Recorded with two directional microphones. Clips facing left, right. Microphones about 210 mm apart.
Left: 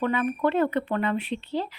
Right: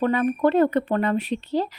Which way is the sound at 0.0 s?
40° right (ahead or behind).